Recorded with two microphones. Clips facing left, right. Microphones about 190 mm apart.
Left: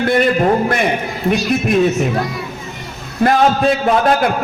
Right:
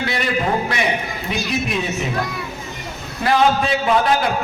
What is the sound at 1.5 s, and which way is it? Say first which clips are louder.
Speech: left 6 dB; 50° left (ahead or behind).